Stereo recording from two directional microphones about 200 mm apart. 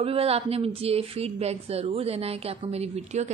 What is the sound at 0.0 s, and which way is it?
A woman's voice, 30° right (ahead or behind).